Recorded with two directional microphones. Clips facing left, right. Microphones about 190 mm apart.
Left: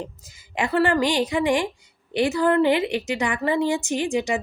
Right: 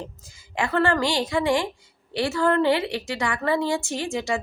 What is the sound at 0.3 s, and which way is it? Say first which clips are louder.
A woman's voice: left 1 dB; 20° left (ahead or behind).